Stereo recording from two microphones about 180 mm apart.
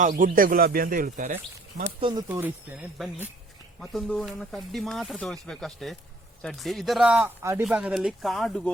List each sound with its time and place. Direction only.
0.0 s speech: 45° right (ahead or behind)
2.0 s speech: 30° right (ahead or behind)
2.2 s speech: 10° right (ahead or behind)